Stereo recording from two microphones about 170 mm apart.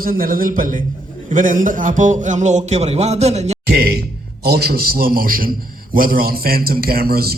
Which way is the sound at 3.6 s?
65° right (ahead or behind).